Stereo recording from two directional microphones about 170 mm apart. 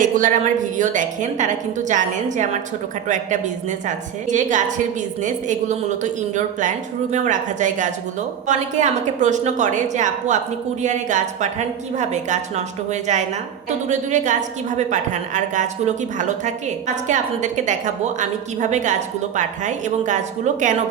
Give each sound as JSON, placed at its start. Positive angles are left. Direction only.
{"t": 0.0, "sound": "a woman's voice", "side_deg": -50}